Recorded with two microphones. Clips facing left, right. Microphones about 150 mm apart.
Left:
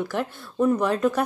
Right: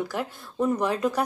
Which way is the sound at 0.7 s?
55° left (ahead or behind).